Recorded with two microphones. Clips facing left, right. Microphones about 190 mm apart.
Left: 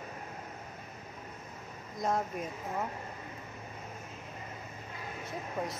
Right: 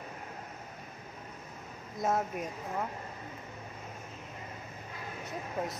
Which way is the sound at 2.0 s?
5° right (ahead or behind).